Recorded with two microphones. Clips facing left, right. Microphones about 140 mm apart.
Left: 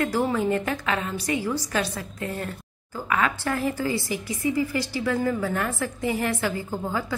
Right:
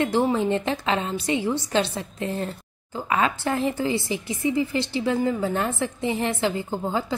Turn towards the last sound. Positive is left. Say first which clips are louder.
# right 2 dB
turn(degrees=-25)  # may be behind; listen again after turning